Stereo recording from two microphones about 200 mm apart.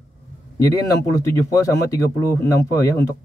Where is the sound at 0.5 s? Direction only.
15° left (ahead or behind).